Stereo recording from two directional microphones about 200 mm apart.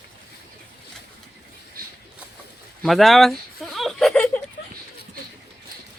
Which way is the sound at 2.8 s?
Centre (ahead or behind).